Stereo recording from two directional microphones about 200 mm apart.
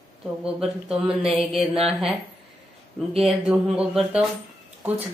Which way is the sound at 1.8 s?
Centre (ahead or behind).